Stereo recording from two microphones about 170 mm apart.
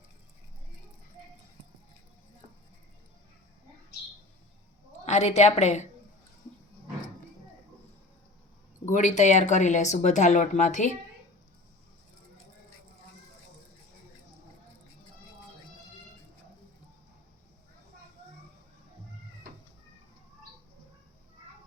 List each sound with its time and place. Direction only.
5.0 s a woman's voice: 40° left (ahead or behind)
8.9 s speech: 45° left (ahead or behind)